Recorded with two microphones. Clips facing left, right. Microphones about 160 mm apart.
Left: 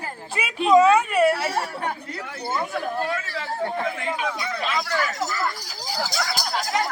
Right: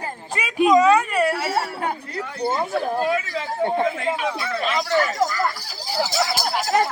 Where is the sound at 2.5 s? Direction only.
20° right (ahead or behind).